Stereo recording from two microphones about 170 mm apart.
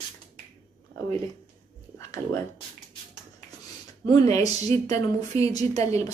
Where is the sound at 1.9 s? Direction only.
15° left (ahead or behind).